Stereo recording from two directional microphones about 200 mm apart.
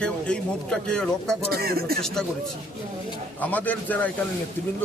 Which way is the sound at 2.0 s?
Centre (ahead or behind).